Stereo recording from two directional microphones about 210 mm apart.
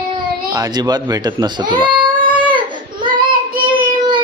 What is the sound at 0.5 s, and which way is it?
Speech, 20° right (ahead or behind).